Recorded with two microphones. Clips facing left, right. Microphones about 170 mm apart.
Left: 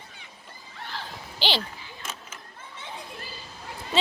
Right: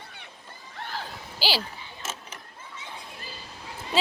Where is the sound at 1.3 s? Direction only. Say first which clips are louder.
Even; 5° right (ahead or behind).